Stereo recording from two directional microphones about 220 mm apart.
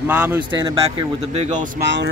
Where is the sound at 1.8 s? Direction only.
50° right (ahead or behind).